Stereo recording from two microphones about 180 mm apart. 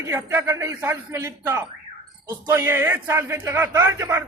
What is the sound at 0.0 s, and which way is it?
Speech, 15° right (ahead or behind).